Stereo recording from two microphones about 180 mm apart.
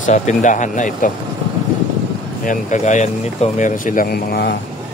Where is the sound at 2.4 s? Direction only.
40° left (ahead or behind); by 4.6 s 65° left (ahead or behind).